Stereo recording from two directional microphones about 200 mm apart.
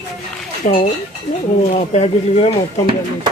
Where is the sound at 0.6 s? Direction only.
35° left (ahead or behind).